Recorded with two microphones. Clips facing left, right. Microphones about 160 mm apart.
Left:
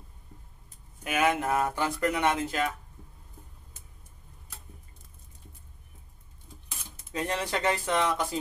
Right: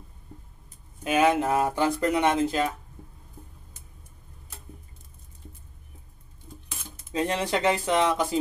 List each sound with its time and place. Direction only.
1.0 s speech: 30° right (ahead or behind)
7.1 s speech: 20° right (ahead or behind)